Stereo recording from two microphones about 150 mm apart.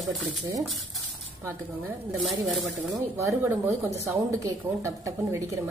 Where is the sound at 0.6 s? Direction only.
Centre (ahead or behind).